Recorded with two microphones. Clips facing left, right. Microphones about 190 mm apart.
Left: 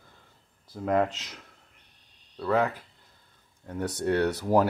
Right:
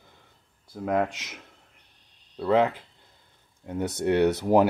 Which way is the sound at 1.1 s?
20° right (ahead or behind).